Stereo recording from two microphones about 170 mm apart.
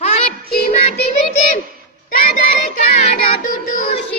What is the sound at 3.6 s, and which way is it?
Music, 50° left (ahead or behind).